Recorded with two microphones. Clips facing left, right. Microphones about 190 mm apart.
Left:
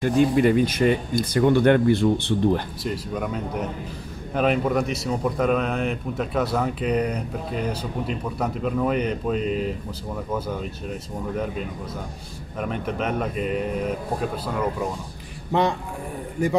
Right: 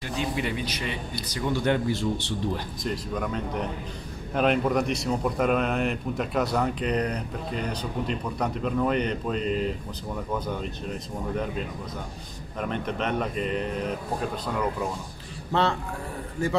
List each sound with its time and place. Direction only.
0.0 s speech: 50° left (ahead or behind)
2.8 s speech: 5° left (ahead or behind)